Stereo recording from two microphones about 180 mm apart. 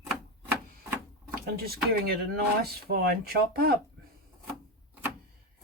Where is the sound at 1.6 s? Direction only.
55° right (ahead or behind).